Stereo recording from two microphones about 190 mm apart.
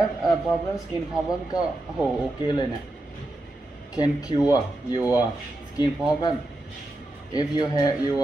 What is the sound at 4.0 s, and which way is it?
Speech, 20° left (ahead or behind).